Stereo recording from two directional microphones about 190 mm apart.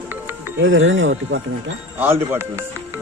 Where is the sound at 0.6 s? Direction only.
90° right.